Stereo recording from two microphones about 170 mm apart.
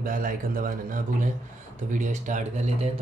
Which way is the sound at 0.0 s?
55° right (ahead or behind).